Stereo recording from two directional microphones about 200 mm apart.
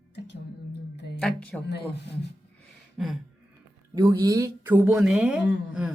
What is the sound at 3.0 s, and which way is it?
Speech, centre (ahead or behind).